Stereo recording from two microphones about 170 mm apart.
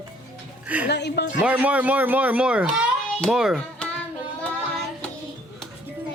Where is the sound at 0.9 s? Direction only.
80° left.